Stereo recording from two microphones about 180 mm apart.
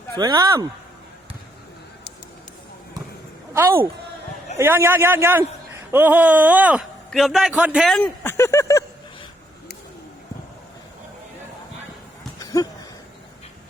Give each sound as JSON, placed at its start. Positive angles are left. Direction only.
{"t": 0.2, "sound": "speech", "side_deg": -20}
{"t": 3.5, "sound": "a man's voice", "side_deg": -15}
{"t": 12.4, "sound": "a sound", "side_deg": 20}